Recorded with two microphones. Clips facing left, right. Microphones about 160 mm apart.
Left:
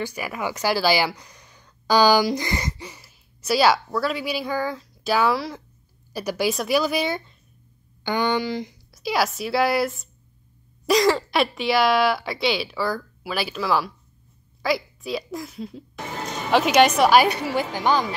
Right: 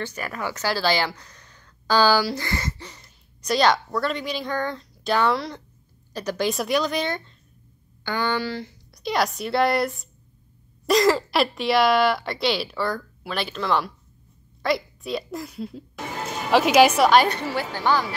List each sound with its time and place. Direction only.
0.0 s a woman's voice: 10° left (ahead or behind)
8.9 s a woman's voice: 5° left (ahead or behind)
17.1 s a woman's voice: 10° left (ahead or behind)